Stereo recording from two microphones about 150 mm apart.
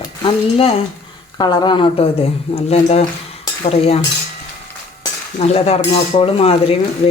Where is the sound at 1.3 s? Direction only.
30° left (ahead or behind).